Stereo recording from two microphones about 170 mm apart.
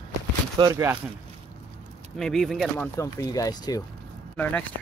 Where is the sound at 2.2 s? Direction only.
Centre (ahead or behind); by 3.8 s 20° left (ahead or behind).